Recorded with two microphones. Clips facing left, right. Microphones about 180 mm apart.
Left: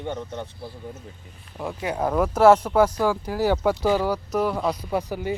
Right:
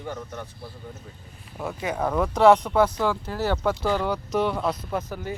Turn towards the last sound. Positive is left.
turn(degrees=10)  # may be behind; listen again after turning